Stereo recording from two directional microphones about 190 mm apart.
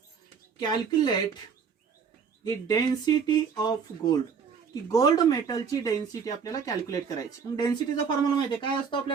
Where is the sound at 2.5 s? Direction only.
20° left (ahead or behind).